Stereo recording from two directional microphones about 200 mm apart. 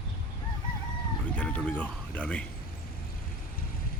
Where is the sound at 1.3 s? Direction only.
5° left (ahead or behind).